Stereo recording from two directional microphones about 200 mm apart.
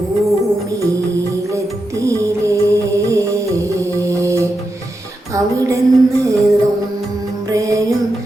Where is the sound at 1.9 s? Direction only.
15° right (ahead or behind).